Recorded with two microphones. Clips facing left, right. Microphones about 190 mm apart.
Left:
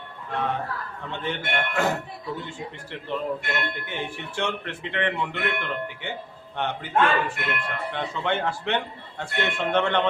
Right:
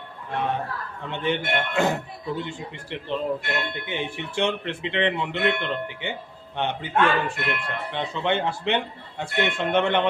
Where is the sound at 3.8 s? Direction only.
20° right (ahead or behind).